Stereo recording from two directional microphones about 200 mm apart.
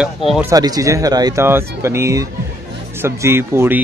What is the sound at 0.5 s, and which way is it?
Speech, 20° right (ahead or behind).